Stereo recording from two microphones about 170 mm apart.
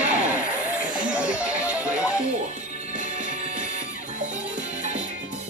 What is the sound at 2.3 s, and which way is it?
Music, 45° right (ahead or behind).